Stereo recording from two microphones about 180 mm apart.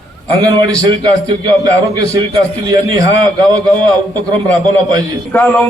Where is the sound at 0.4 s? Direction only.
25° right (ahead or behind).